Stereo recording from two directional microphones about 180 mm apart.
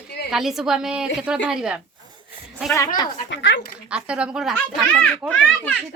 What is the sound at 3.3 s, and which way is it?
Speech, 85° left.